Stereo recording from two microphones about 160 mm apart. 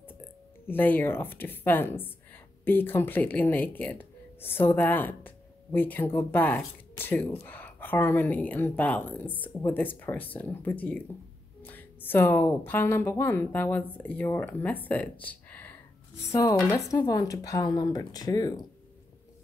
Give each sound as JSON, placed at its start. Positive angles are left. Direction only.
{"t": 0.7, "sound": "speech", "side_deg": 10}
{"t": 16.3, "sound": "speech", "side_deg": 20}